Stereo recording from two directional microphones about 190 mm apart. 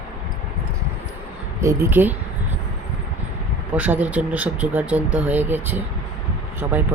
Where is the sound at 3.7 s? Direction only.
10° right (ahead or behind).